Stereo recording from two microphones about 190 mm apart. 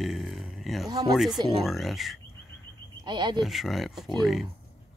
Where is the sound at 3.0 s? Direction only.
25° right (ahead or behind).